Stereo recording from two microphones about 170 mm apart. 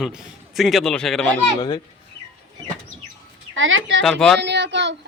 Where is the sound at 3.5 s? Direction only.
90° right.